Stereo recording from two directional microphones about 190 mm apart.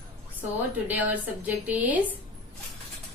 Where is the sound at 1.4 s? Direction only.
10° right (ahead or behind).